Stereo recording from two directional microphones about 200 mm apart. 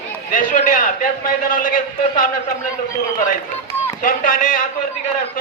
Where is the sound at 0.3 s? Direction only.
40° left (ahead or behind).